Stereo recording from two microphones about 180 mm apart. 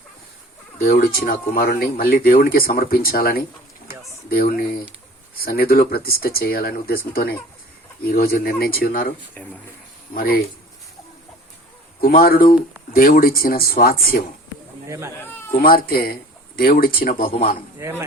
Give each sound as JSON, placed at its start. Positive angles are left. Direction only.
{"t": 0.8, "sound": "speech", "side_deg": 55}
{"t": 9.3, "sound": "speech", "side_deg": 10}
{"t": 10.2, "sound": "speech", "side_deg": 55}
{"t": 11.9, "sound": "speech", "side_deg": 55}
{"t": 14.8, "sound": "speech", "side_deg": -15}
{"t": 15.2, "sound": "cat", "side_deg": 10}
{"t": 15.5, "sound": "speech", "side_deg": 55}
{"t": 17.7, "sound": "speech", "side_deg": -15}